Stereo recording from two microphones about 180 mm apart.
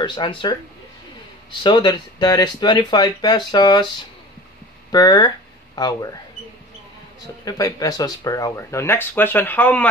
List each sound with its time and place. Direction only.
0.0 s speech: 25° left (ahead or behind)
4.9 s speech: 20° left (ahead or behind)
7.4 s speech: 20° left (ahead or behind)